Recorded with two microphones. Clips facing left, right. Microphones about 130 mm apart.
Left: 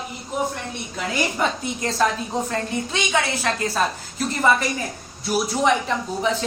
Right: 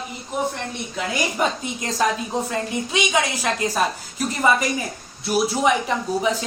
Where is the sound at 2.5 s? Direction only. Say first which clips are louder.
Right 1 dB; 10° right (ahead or behind).